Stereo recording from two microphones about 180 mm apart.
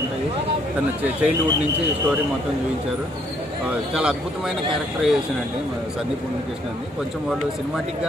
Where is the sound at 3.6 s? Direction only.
5° right (ahead or behind).